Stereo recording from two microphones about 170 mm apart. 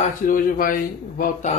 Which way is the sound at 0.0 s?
50° left (ahead or behind).